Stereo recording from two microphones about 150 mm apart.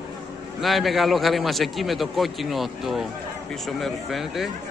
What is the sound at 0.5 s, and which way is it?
A man's voice, centre (ahead or behind).